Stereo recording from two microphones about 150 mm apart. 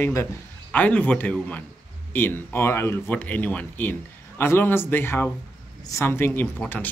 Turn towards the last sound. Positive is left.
turn(degrees=10)  # may be behind; listen again after turning